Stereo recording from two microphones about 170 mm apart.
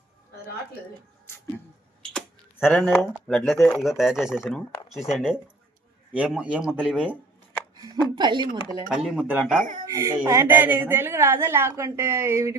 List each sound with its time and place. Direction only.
2.0 s a woman's voice: 10° left (ahead or behind)
8.1 s speech: 25° right (ahead or behind)
9.0 s speech: 5° right (ahead or behind)
9.6 s speech: 50° right (ahead or behind)
9.8 s a woman's voice: 20° right (ahead or behind)